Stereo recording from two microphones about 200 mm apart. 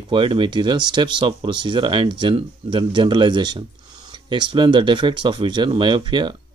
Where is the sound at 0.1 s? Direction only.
25° right (ahead or behind).